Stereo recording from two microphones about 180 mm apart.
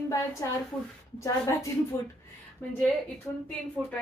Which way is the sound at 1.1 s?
15° left (ahead or behind).